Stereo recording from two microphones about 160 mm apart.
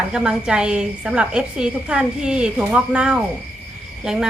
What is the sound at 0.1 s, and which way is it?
A woman's voice, 5° right (ahead or behind).